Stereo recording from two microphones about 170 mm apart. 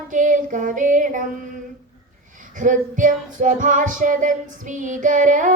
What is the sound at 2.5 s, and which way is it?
Child singing, 50° right (ahead or behind).